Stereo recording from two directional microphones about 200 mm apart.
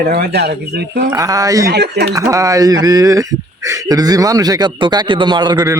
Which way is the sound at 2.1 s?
15° right (ahead or behind).